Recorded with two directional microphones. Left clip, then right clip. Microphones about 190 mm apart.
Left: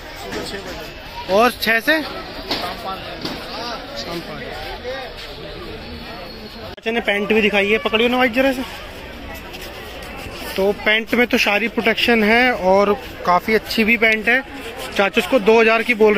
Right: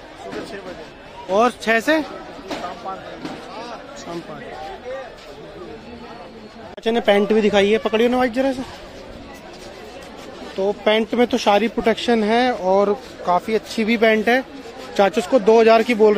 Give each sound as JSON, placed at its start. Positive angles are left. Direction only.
{"t": 1.3, "sound": "speech", "side_deg": -10}
{"t": 6.8, "sound": "speech", "side_deg": -20}
{"t": 8.2, "sound": "speech", "side_deg": -15}
{"t": 10.6, "sound": "speech", "side_deg": -10}